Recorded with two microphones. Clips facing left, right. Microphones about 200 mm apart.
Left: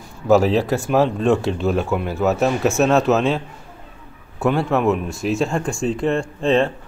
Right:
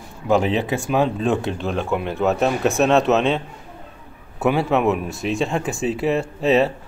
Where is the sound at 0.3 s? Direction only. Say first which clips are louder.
Left 4 dB; centre (ahead or behind).